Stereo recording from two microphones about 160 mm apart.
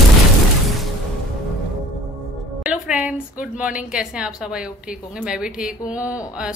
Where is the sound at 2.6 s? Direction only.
10° right (ahead or behind).